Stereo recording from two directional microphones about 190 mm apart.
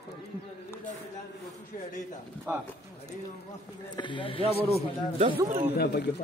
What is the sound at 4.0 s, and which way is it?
Speech, 25° left (ahead or behind).